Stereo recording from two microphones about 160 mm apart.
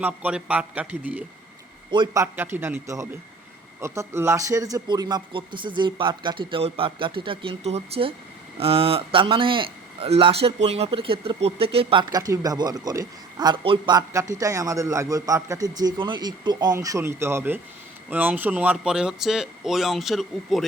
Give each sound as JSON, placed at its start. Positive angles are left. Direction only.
{"t": 0.0, "sound": "a man's voice", "side_deg": -10}